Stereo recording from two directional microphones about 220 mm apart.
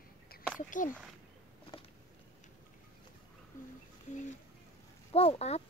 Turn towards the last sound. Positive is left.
turn(degrees=30)  # may be behind; listen again after turning